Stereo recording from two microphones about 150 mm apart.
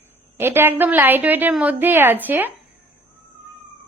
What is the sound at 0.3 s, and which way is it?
A woman's voice, 15° right (ahead or behind).